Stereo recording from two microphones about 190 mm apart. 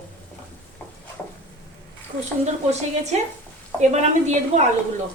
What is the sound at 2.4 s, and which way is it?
Speech, 35° right (ahead or behind).